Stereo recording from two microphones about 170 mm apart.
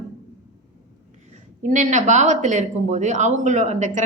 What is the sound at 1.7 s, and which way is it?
Speech, 45° right (ahead or behind).